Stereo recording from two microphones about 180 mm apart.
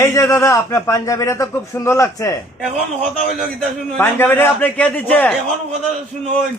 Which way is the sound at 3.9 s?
10° left (ahead or behind).